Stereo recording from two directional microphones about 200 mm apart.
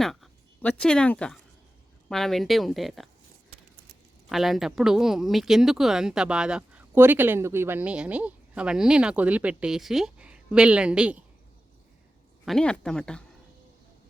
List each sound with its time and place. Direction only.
0.0 s speech: centre (ahead or behind)
4.3 s speech: centre (ahead or behind)
12.5 s speech: 5° left (ahead or behind)